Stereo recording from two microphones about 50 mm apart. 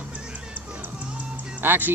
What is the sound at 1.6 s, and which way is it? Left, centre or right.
Speech, right.